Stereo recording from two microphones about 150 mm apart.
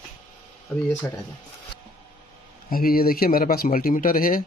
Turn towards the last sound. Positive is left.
turn(degrees=70)  # may be behind; listen again after turning